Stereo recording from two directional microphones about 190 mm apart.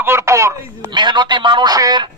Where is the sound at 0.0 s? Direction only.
15° right (ahead or behind).